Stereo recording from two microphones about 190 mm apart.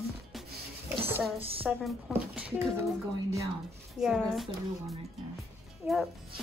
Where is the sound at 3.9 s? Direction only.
Centre (ahead or behind).